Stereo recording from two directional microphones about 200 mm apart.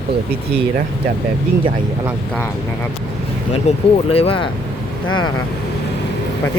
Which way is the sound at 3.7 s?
35° left (ahead or behind).